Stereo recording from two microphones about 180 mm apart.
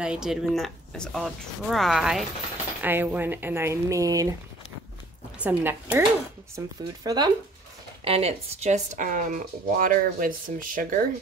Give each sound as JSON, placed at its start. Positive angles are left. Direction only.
{"t": 0.0, "sound": "speech", "side_deg": -5}
{"t": 5.4, "sound": "speech", "side_deg": -10}
{"t": 8.0, "sound": "speech", "side_deg": -35}